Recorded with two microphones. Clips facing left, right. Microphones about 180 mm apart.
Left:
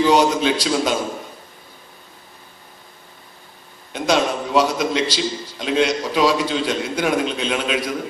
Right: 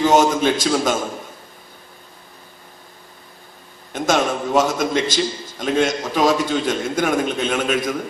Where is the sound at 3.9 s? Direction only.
50° right (ahead or behind).